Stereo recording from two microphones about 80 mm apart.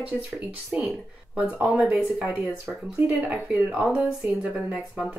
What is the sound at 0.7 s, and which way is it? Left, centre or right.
Speech, centre.